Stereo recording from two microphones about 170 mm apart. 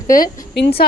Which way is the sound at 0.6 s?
75° left (ahead or behind).